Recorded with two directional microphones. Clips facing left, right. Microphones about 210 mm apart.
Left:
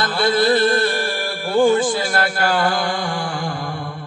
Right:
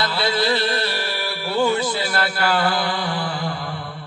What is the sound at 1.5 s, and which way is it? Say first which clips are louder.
Speech: left 5 dB; 50° left (ahead or behind).